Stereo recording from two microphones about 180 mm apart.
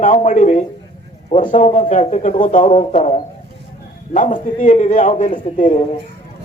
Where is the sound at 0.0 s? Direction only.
45° left (ahead or behind).